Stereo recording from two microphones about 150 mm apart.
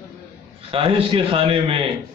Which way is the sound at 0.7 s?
35° right (ahead or behind).